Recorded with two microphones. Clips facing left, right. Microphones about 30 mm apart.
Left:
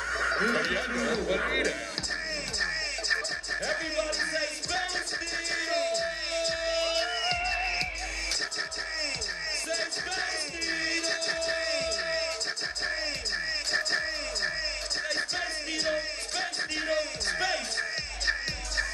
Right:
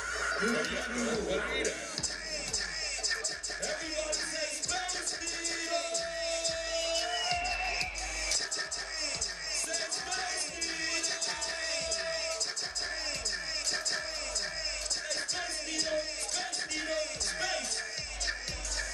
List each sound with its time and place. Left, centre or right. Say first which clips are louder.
0.1 s speech: left 4 dB; left
3.6 s music: left 4 dB; left
9.8 s music: left 4 dB; left
13.7 s music: left 7 dB; left